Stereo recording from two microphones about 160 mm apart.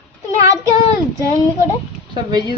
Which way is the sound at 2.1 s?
30° right (ahead or behind).